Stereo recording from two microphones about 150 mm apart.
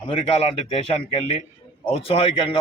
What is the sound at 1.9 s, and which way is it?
Speech, 40° left (ahead or behind).